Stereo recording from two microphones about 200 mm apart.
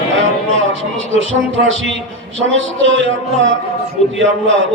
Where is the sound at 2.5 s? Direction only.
70° right (ahead or behind).